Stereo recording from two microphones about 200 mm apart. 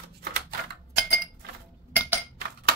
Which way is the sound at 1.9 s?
10° right (ahead or behind).